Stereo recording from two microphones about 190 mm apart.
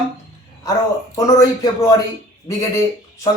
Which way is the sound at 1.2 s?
15° left (ahead or behind).